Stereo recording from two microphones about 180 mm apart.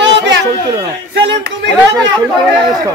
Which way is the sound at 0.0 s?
90° right.